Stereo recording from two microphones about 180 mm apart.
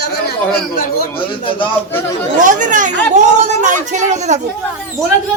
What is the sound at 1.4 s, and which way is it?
Speech, 30° left (ahead or behind).